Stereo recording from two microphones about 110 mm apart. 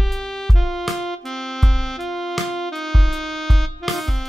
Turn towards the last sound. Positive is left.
turn(degrees=0)  # may be behind; listen again after turning